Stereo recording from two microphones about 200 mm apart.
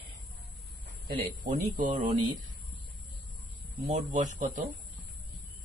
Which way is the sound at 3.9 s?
40° right (ahead or behind).